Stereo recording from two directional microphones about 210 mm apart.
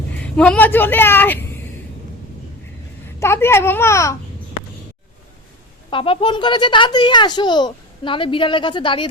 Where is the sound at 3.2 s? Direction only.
10° left (ahead or behind).